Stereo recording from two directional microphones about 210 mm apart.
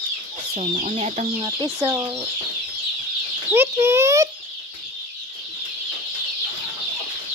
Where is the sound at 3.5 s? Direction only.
10° right (ahead or behind).